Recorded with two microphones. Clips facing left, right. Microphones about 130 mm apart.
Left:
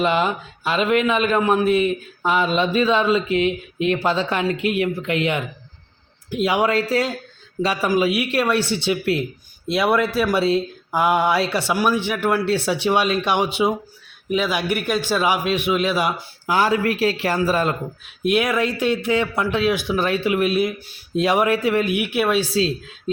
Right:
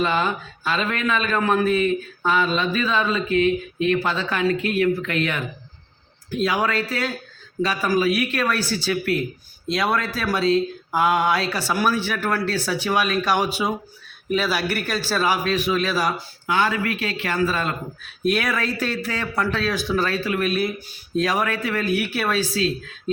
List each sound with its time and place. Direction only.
0.0 s a man's voice: 25° left (ahead or behind)
18.3 s a man's voice: 20° left (ahead or behind)